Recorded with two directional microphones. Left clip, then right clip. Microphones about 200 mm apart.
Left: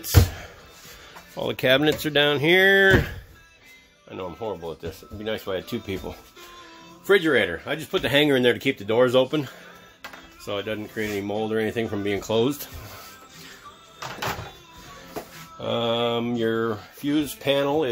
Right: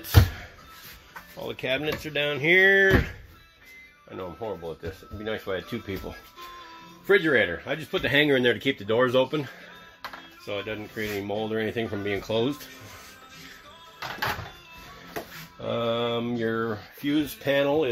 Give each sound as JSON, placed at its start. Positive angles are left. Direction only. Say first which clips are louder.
{"t": 1.3, "sound": "speech", "louder": "left 8 dB", "side_deg": 40}
{"t": 4.1, "sound": "speech", "louder": "left 3 dB", "side_deg": 5}
{"t": 10.4, "sound": "speech", "louder": "left 3 dB", "side_deg": 20}
{"t": 15.6, "sound": "speech", "louder": "left 3 dB", "side_deg": 10}